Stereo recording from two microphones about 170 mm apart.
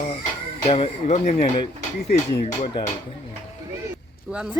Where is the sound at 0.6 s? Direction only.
35° left (ahead or behind).